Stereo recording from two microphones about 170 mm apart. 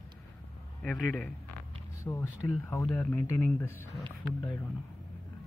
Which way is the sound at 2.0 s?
15° left (ahead or behind).